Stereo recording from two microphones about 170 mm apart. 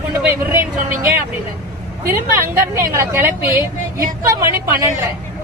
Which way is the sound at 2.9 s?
15° right (ahead or behind).